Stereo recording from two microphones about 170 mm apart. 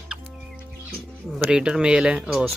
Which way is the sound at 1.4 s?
5° right (ahead or behind).